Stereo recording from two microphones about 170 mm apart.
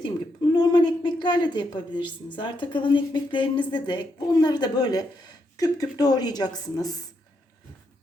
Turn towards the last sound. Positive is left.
turn(degrees=25)  # may be behind; listen again after turning